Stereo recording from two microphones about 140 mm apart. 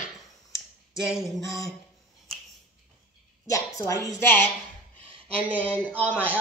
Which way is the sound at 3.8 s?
20° left (ahead or behind).